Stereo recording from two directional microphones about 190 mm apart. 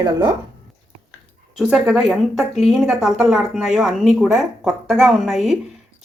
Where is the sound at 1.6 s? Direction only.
5° right (ahead or behind).